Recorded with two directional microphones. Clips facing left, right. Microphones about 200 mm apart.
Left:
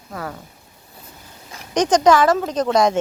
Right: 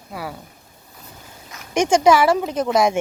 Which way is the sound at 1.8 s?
10° right (ahead or behind).